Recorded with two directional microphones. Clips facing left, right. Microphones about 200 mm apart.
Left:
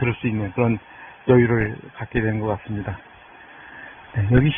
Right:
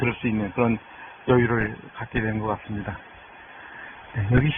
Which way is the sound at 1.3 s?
15° left (ahead or behind).